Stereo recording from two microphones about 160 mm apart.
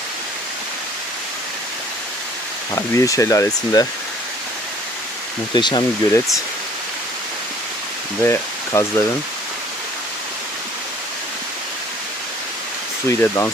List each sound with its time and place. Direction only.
2.7 s speech: 20° left (ahead or behind)
5.5 s speech: 30° left (ahead or behind)
8.2 s speech: 20° left (ahead or behind)
13.1 s speech: 15° left (ahead or behind)